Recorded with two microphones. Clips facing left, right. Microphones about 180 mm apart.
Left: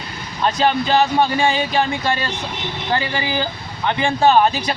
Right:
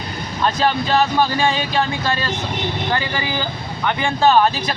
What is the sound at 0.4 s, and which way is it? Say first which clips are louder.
Speech: left 1 dB; 25° left (ahead or behind).